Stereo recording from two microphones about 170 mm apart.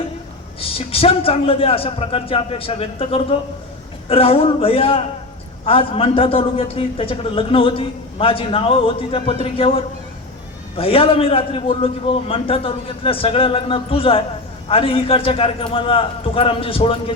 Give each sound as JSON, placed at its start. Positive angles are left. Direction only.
{"t": 0.6, "sound": "a man's voice", "side_deg": 35}